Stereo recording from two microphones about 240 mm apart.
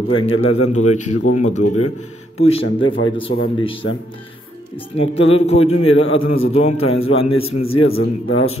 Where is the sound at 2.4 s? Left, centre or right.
Left.